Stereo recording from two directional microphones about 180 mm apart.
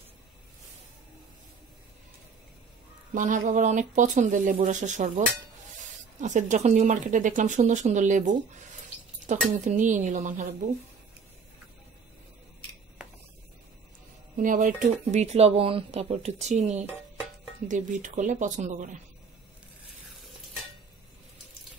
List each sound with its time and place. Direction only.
3.2 s speech: 45° right (ahead or behind)
6.2 s speech: 40° right (ahead or behind)
14.3 s speech: 45° right (ahead or behind)